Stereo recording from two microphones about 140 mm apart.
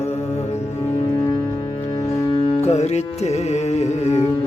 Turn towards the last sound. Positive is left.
turn(degrees=55)  # may be behind; listen again after turning